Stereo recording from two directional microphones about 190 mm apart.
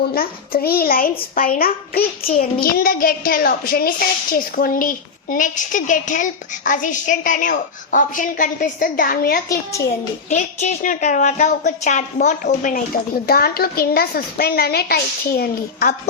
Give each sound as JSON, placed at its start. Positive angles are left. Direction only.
{"t": 0.1, "sound": "a child's voice", "side_deg": 50}
{"t": 10.0, "sound": "a child's voice", "side_deg": 40}